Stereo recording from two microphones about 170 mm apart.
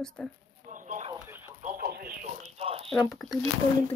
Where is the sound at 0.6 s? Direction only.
50° right (ahead or behind).